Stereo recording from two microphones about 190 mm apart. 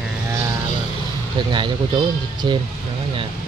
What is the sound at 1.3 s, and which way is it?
Speech, 25° right (ahead or behind).